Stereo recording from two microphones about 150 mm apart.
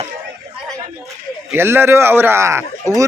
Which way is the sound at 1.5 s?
15° right (ahead or behind).